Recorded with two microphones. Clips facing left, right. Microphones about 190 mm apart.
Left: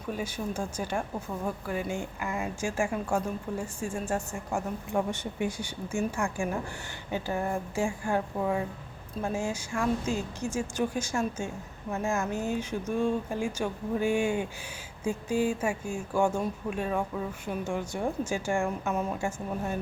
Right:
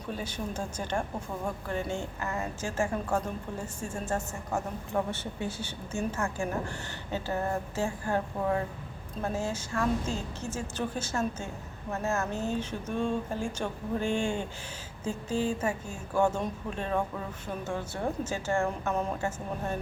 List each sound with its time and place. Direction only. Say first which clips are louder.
0.1 s speech: left 3 dB; 10° left (ahead or behind)